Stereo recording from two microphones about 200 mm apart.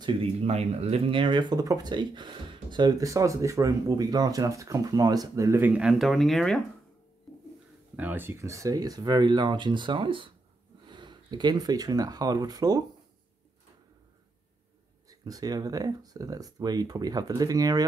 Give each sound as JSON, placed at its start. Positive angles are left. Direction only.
{"t": 0.0, "sound": "speech", "side_deg": -30}
{"t": 7.9, "sound": "speech", "side_deg": -10}
{"t": 15.0, "sound": "speech", "side_deg": -15}